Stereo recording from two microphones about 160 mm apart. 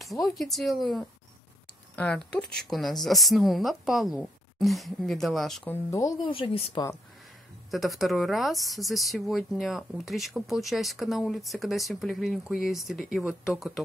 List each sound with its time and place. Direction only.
0.4 s speech: centre (ahead or behind)
5.9 s speech: 20° left (ahead or behind)
6.2 s a woman's voice: 35° left (ahead or behind)
7.7 s speech: centre (ahead or behind)